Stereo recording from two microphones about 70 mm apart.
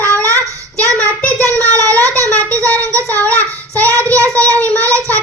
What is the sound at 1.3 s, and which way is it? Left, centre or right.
Child singing, right.